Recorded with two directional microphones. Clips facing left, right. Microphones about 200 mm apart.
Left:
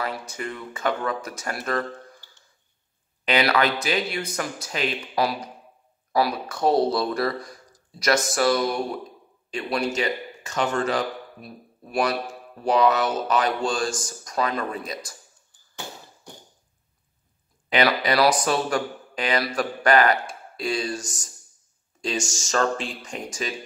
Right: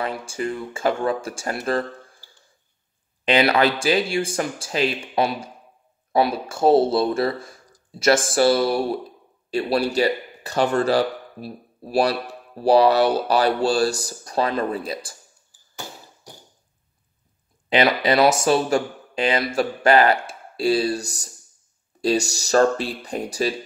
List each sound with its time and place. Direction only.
0.0 s speech: 30° right (ahead or behind)
3.3 s speech: 30° right (ahead or behind)
17.6 s speech: 25° right (ahead or behind)
21.0 s speech: 65° right (ahead or behind)
22.0 s speech: 35° right (ahead or behind)